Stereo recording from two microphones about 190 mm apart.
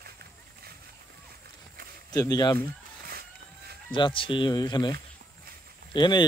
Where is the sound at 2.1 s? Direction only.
20° left (ahead or behind).